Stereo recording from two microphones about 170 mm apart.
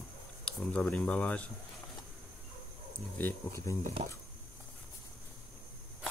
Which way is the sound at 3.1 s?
15° left (ahead or behind).